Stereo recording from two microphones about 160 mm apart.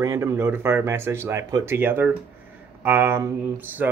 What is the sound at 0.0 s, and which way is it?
Speech, 20° right (ahead or behind).